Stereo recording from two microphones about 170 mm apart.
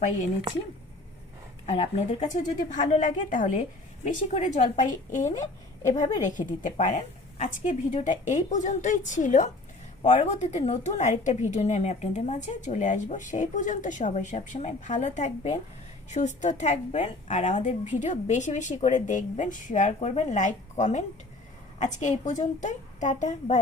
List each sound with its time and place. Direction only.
1.6 s a woman's voice: 40° left (ahead or behind)